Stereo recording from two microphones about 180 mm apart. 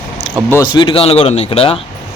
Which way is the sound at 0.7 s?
25° left (ahead or behind).